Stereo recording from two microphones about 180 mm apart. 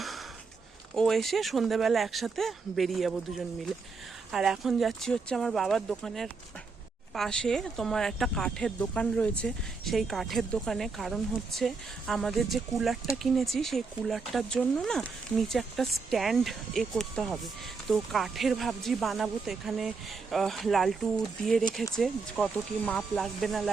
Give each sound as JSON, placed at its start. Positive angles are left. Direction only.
{"t": 0.9, "sound": "speech", "side_deg": 0}